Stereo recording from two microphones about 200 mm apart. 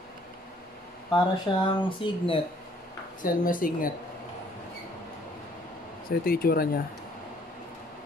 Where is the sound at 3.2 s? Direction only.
45° left (ahead or behind).